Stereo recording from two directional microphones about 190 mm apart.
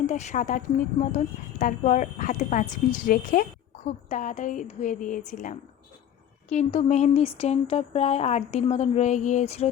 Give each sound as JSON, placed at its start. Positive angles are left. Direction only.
{"t": 0.0, "sound": "speech", "side_deg": 35}